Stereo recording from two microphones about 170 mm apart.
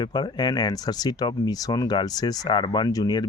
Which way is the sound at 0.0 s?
25° left (ahead or behind).